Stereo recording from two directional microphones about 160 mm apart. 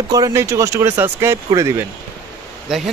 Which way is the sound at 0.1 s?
20° right (ahead or behind).